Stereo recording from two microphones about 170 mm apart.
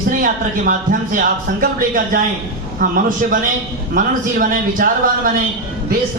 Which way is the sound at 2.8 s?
55° right (ahead or behind).